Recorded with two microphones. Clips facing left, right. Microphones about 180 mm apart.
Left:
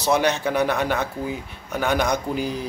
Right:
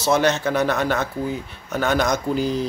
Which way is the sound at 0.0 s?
15° left (ahead or behind).